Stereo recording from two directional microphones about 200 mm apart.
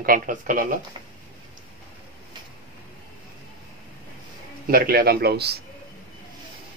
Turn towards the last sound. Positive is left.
turn(degrees=-55)  # may be behind; listen again after turning